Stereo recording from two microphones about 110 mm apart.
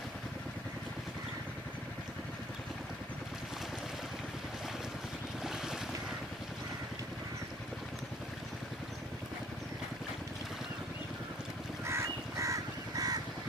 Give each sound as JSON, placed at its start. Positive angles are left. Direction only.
{"t": 5.4, "sound": "boat", "side_deg": -5}
{"t": 11.8, "sound": "crow", "side_deg": -25}